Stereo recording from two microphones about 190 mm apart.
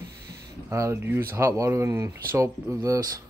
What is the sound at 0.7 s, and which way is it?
Speech, 15° right (ahead or behind).